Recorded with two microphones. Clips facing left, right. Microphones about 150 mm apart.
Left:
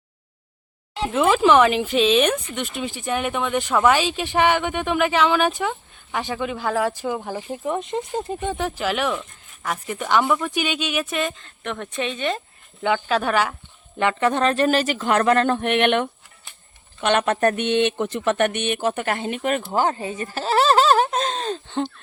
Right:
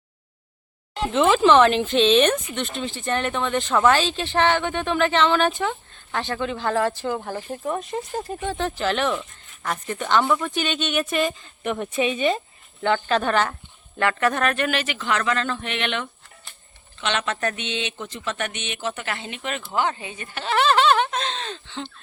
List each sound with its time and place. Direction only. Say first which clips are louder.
1.0 s speech: even; 5° left (ahead or behind)
12.8 s speech: even; 5° left (ahead or behind)
14.0 s speech: left 2 dB; 20° left (ahead or behind); by 21.8 s 45° left (ahead or behind)